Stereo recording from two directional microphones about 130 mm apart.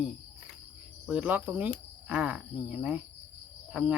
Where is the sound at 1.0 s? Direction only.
10° right (ahead or behind).